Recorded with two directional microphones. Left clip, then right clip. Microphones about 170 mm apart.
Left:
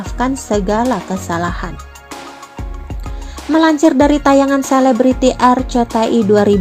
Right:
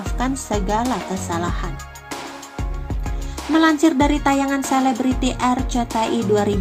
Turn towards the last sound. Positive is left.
turn(degrees=45)  # may be behind; listen again after turning